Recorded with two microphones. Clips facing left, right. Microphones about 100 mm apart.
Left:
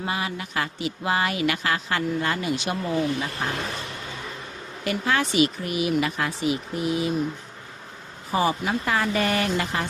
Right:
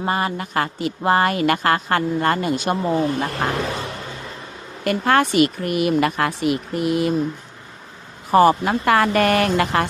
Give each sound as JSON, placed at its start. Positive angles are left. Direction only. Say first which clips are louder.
{"t": 0.0, "sound": "speech", "louder": "right 6 dB", "side_deg": -45}
{"t": 2.8, "sound": "speech", "louder": "right 3 dB", "side_deg": -35}
{"t": 3.3, "sound": "speech", "louder": "right 6 dB", "side_deg": -90}
{"t": 4.8, "sound": "speech", "louder": "right 7 dB", "side_deg": -55}
{"t": 8.3, "sound": "speech", "louder": "right 9 dB", "side_deg": -65}